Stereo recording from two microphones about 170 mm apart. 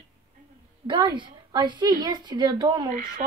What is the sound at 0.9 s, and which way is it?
A woman's voice, 30° right (ahead or behind).